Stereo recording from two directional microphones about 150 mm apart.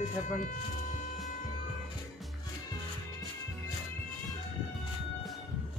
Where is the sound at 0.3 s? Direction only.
60° left (ahead or behind).